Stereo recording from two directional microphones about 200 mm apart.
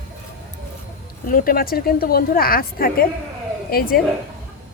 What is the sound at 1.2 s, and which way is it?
A woman's voice, 45° left (ahead or behind).